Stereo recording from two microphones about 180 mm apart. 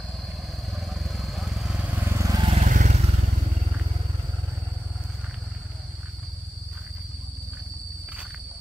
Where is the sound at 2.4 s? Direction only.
40° right (ahead or behind).